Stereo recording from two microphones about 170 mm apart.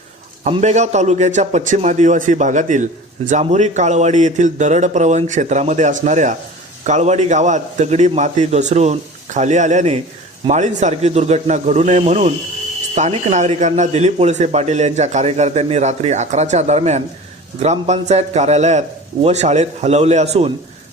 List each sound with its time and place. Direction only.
0.6 s a man's voice: 45° right (ahead or behind)